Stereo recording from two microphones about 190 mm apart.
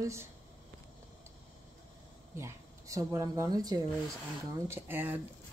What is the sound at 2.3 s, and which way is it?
Speech, 15° right (ahead or behind).